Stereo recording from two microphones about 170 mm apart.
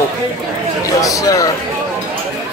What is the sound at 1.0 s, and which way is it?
Speech, 20° left (ahead or behind).